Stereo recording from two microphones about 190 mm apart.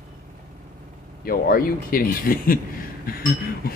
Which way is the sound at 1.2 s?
50° left (ahead or behind).